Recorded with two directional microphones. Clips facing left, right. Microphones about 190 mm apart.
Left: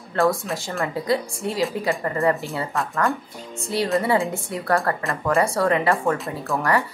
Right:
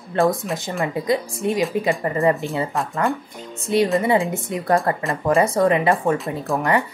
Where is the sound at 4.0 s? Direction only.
20° right (ahead or behind).